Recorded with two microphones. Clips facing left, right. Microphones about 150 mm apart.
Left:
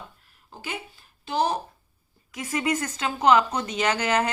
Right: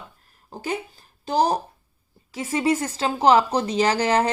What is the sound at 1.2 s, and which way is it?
Speech, 40° right (ahead or behind).